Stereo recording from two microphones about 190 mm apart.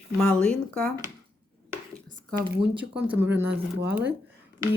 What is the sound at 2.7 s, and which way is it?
Speech, 5° right (ahead or behind).